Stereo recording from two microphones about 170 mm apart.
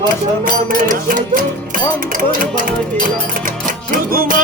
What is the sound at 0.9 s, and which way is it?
Music, 50° right (ahead or behind).